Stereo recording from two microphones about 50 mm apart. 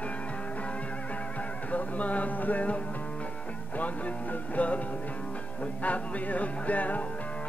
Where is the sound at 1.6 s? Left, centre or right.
Left.